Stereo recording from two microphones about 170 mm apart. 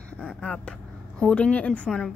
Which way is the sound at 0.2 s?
5° left (ahead or behind).